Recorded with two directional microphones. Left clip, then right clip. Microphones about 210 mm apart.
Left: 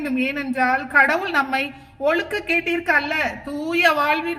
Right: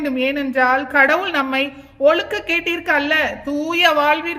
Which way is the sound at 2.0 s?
15° right (ahead or behind).